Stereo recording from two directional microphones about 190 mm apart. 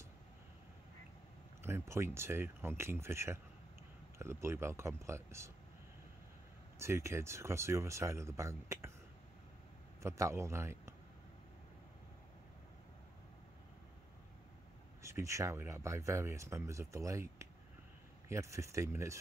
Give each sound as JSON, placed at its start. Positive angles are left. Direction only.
{"t": 1.6, "sound": "speech", "side_deg": -15}
{"t": 6.8, "sound": "speech", "side_deg": -15}
{"t": 10.0, "sound": "a man's voice", "side_deg": -15}
{"t": 15.0, "sound": "speech", "side_deg": -15}